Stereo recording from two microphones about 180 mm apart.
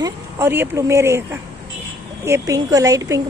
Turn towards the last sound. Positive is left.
turn(degrees=-20)  # may be behind; listen again after turning